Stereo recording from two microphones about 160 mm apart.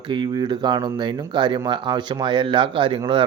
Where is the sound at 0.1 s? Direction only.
30° right (ahead or behind).